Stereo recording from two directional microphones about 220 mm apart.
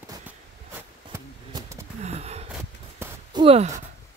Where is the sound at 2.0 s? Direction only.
30° right (ahead or behind).